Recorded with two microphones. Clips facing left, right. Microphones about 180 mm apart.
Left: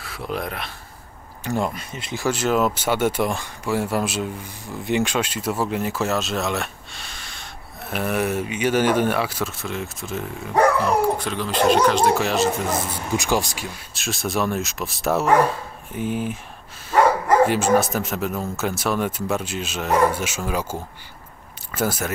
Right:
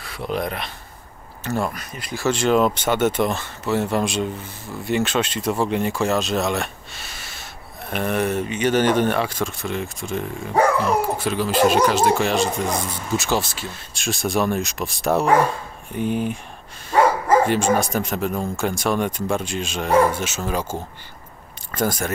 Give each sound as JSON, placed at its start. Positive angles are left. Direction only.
{"t": 0.0, "sound": "speech", "side_deg": 5}
{"t": 1.4, "sound": "speech", "side_deg": 15}
{"t": 2.2, "sound": "speech", "side_deg": 5}
{"t": 7.9, "sound": "speech", "side_deg": 5}
{"t": 13.1, "sound": "speech", "side_deg": 15}
{"t": 17.5, "sound": "speech", "side_deg": 5}
{"t": 21.7, "sound": "speech", "side_deg": 5}